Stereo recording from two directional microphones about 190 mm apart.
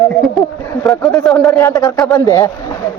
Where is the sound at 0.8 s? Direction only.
10° left (ahead or behind).